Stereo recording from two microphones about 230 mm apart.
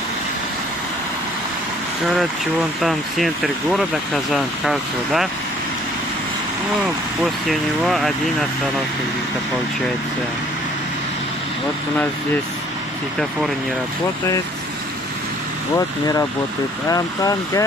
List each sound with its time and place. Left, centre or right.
2.8 s speech: centre
7.4 s speech: centre
16.9 s speech: centre